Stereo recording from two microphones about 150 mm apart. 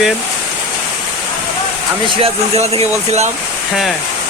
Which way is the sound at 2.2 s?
40° right (ahead or behind).